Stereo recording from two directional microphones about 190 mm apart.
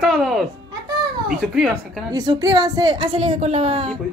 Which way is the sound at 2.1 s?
20° right (ahead or behind).